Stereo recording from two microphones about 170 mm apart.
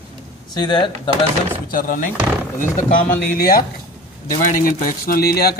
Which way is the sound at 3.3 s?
60° left (ahead or behind).